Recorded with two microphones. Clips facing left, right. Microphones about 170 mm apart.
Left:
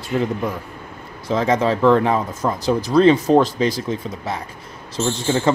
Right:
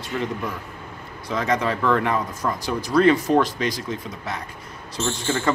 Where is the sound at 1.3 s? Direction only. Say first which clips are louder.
Left 5 dB; 30° left (ahead or behind).